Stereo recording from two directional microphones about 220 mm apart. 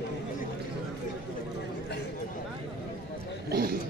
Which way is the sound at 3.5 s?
45° right (ahead or behind).